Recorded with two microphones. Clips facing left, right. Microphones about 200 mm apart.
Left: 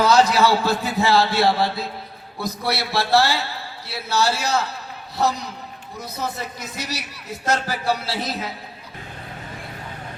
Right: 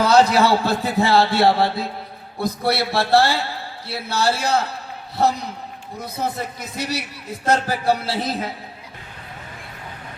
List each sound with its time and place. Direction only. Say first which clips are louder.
0.0 s a man's voice: right 1 dB; 60° right (ahead or behind)